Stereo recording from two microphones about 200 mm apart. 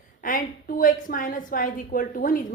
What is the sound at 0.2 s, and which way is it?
A woman's voice, 45° left (ahead or behind).